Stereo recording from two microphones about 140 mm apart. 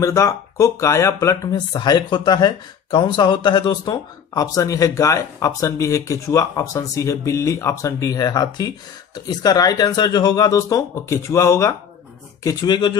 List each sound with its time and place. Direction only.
0.0 s speech: 25° left (ahead or behind)